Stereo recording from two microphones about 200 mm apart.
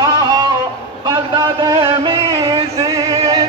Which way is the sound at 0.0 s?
20° right (ahead or behind).